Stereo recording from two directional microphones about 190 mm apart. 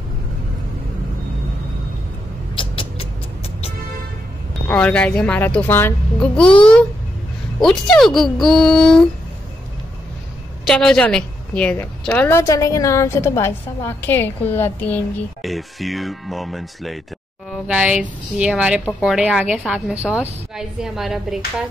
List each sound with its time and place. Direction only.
2.5 s music: 25° left (ahead or behind)
4.6 s a woman's voice: 5° left (ahead or behind)
7.6 s a woman's voice: centre (ahead or behind)
10.7 s a woman's voice: 5° left (ahead or behind)